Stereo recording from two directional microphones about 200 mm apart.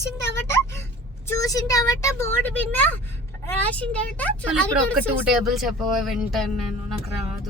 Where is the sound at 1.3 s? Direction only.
15° left (ahead or behind); by 6.5 s centre (ahead or behind).